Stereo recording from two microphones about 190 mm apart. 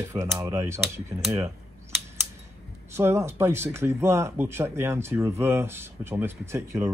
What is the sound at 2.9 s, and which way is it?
Speech, 15° right (ahead or behind).